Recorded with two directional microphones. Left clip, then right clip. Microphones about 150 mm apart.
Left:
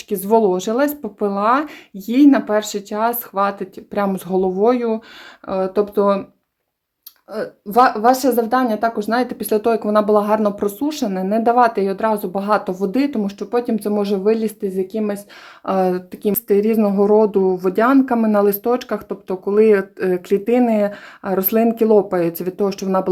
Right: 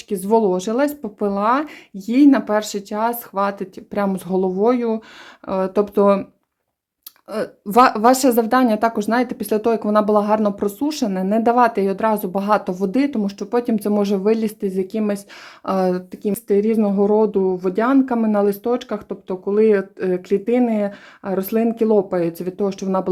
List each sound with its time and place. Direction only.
0.1 s speech: 10° right (ahead or behind)
5.5 s speech: 30° right (ahead or behind)
7.3 s speech: 45° right (ahead or behind); by 13.5 s 15° right (ahead or behind)
13.5 s speech: 30° right (ahead or behind)
15.6 s speech: 15° right (ahead or behind)
16.2 s speech: 5° right (ahead or behind)